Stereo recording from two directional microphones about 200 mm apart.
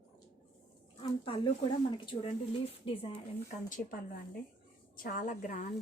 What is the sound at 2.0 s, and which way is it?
A woman's voice, 25° left (ahead or behind).